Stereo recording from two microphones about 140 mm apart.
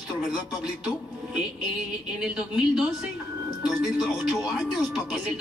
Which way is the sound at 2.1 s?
5° right (ahead or behind).